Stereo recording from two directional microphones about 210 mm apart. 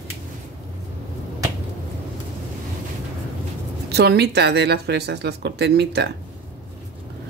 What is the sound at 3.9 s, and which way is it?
Speech, 50° right (ahead or behind).